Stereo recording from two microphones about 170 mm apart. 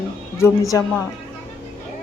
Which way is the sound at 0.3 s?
15° left (ahead or behind).